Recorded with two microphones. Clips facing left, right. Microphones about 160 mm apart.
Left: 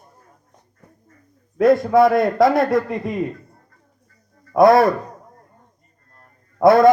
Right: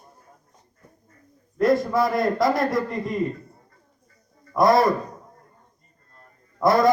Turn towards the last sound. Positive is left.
turn(degrees=65)  # may be behind; listen again after turning